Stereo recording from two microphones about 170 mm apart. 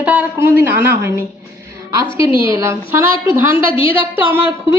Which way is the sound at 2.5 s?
15° right (ahead or behind).